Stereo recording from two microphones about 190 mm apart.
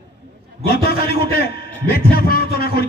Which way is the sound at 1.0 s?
55° left (ahead or behind).